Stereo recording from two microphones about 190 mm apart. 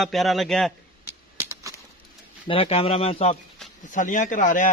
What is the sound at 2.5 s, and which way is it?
Speech, 30° left (ahead or behind).